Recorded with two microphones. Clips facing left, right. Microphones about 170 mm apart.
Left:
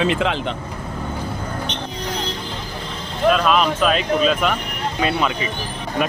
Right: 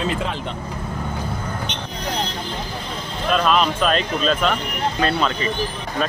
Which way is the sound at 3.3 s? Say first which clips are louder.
Right 2 dB; centre (ahead or behind).